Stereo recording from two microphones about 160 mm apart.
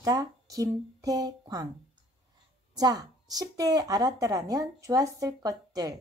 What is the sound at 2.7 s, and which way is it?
A woman's voice, 25° right (ahead or behind).